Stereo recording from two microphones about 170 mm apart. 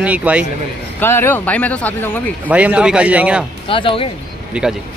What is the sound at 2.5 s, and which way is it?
Speech, 10° right (ahead or behind).